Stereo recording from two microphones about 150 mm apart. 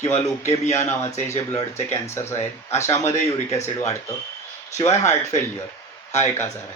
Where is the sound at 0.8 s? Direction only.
50° left (ahead or behind).